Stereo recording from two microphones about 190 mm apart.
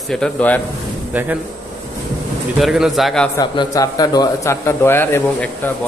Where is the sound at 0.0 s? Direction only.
5° left (ahead or behind).